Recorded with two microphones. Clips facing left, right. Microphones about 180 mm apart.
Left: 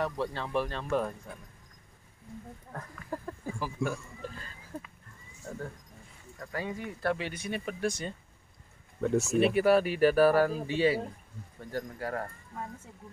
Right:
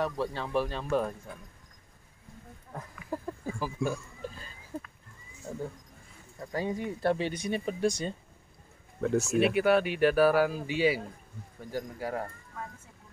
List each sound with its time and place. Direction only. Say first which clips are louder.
0.0 s speech: right 1 dB; 5° right (ahead or behind)
2.7 s a sound: right 2 dB; 10° right (ahead or behind)
5.5 s speech: right 2 dB; 15° right (ahead or behind)
9.0 s speech: even; centre (ahead or behind)